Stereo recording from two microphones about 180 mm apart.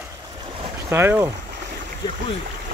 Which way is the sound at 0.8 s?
15° right (ahead or behind).